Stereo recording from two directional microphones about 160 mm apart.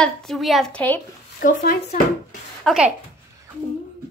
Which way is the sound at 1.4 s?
55° left (ahead or behind).